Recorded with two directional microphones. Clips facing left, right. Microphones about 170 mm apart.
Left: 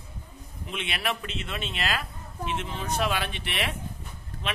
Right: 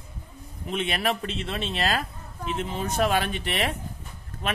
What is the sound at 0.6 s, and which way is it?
A man's voice, 40° right (ahead or behind).